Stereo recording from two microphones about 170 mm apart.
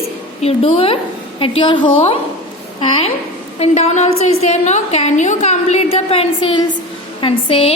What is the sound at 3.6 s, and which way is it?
A woman's voice, 40° left (ahead or behind).